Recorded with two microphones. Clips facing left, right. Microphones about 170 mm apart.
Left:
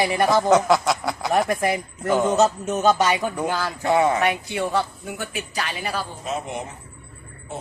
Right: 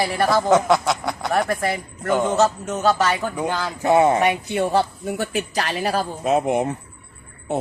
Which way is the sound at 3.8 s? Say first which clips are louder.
Right 3 dB; 20° right (ahead or behind).